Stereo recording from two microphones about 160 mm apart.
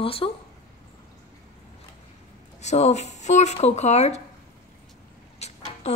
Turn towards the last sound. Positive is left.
turn(degrees=40)  # may be behind; listen again after turning